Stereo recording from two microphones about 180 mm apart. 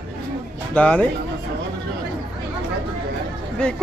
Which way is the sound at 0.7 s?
10° left (ahead or behind).